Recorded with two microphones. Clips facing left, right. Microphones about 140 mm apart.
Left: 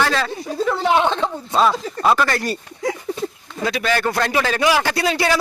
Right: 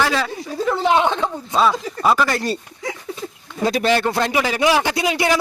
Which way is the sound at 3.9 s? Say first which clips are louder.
Right 1 dB; 20° right (ahead or behind).